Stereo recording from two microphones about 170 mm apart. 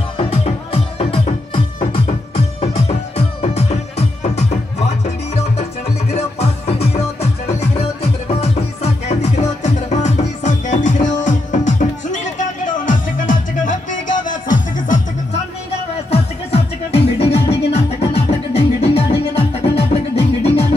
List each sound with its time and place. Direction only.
0.2 s music: 35° left (ahead or behind)
16.1 s music: 35° left (ahead or behind)